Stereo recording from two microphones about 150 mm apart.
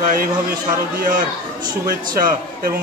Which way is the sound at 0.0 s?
70° right (ahead or behind).